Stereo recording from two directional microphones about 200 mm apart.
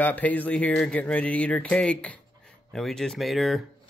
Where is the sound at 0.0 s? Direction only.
10° left (ahead or behind).